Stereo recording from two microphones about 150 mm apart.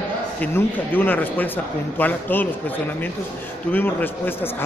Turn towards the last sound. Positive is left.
turn(degrees=10)  # may be behind; listen again after turning